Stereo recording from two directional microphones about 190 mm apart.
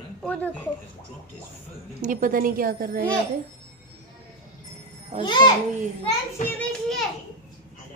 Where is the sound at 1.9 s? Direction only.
45° right (ahead or behind).